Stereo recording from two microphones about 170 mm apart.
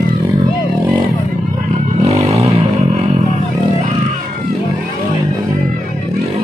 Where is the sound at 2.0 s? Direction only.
35° right (ahead or behind).